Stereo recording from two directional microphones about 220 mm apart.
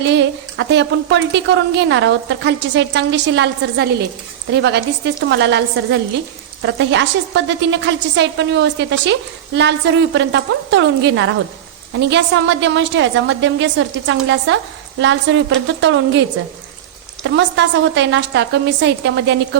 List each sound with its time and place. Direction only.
0.0 s a woman's voice: 55° right (ahead or behind)
17.2 s a woman's voice: 55° right (ahead or behind)